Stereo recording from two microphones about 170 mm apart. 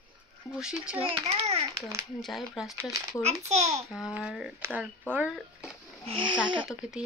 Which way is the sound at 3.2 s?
40° right (ahead or behind).